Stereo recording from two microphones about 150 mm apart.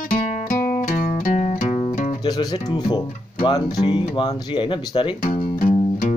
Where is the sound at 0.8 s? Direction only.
65° left (ahead or behind).